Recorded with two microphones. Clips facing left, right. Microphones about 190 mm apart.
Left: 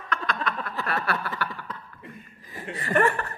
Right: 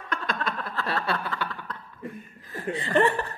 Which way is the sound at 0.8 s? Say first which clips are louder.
Even; 30° right (ahead or behind).